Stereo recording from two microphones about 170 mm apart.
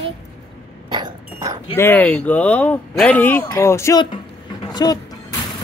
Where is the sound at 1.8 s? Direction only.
10° left (ahead or behind).